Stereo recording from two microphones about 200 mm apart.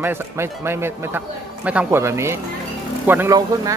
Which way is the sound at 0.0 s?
10° right (ahead or behind).